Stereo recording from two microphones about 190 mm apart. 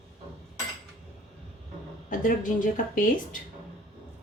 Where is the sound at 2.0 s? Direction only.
45° left (ahead or behind).